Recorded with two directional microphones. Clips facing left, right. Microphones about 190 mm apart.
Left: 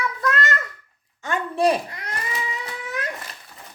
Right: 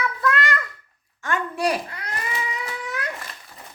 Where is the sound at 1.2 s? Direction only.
25° left (ahead or behind).